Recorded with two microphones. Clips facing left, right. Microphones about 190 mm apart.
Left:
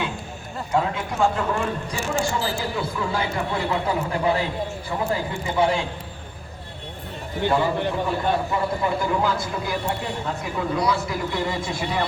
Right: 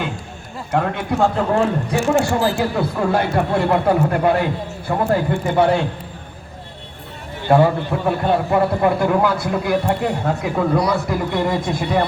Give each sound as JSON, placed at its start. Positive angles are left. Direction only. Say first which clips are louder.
{"t": 0.7, "sound": "a man's voice", "louder": "right 4 dB", "side_deg": -60}
{"t": 7.5, "sound": "a man's voice", "louder": "right 8 dB", "side_deg": -60}